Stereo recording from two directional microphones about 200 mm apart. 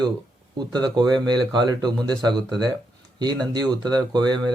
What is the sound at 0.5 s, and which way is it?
Speech, 20° right (ahead or behind).